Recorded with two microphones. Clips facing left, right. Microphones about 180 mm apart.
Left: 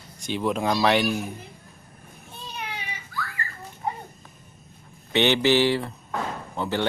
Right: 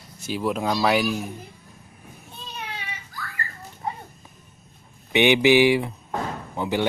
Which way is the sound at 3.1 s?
40° right (ahead or behind).